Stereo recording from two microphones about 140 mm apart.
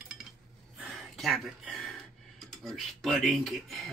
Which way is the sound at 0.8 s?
Centre (ahead or behind).